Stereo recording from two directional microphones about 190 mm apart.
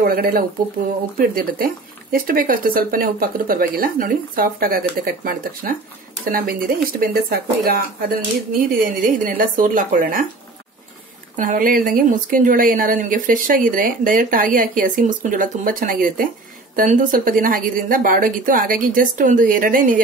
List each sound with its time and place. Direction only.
0.0 s a woman's voice: 50° right (ahead or behind)
11.3 s a woman's voice: 45° right (ahead or behind)